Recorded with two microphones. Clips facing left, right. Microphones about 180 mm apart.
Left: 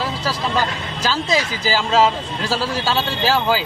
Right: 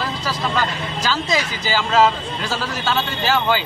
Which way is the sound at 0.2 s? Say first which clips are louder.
Left 1 dB; 10° left (ahead or behind).